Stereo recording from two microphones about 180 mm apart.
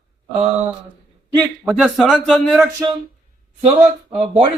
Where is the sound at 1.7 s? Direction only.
5° right (ahead or behind).